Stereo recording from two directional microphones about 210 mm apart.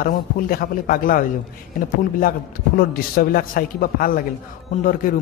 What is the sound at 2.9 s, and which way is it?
A man's voice, 45° left (ahead or behind).